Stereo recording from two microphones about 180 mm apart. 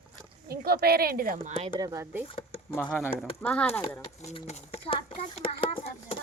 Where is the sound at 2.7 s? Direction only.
5° left (ahead or behind).